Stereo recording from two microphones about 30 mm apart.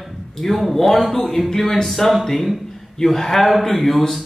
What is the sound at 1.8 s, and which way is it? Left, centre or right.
Speech, centre.